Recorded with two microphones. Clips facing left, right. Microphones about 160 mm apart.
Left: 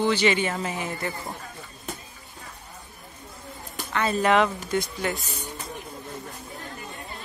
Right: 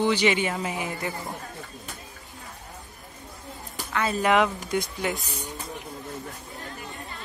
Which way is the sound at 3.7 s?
5° right (ahead or behind).